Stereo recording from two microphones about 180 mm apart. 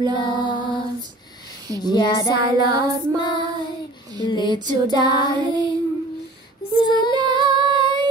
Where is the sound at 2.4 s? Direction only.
20° right (ahead or behind).